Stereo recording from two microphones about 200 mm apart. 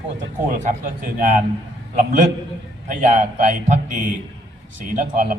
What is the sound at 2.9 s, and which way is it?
Speech, 40° right (ahead or behind).